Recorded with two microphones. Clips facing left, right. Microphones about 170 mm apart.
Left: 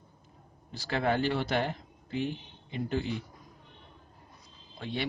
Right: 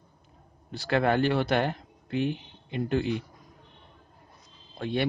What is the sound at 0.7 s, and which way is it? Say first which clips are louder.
Speech: right 5 dB; 65° right (ahead or behind).